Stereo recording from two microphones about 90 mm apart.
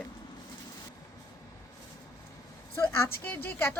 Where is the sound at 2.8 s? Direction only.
25° left (ahead or behind).